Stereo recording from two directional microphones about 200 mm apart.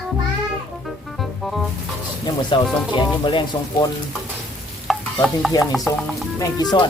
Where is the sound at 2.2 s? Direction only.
25° left (ahead or behind).